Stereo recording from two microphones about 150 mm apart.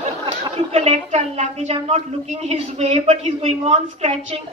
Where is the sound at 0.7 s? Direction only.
40° right (ahead or behind).